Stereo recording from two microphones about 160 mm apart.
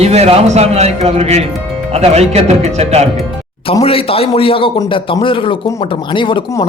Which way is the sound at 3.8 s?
35° left (ahead or behind).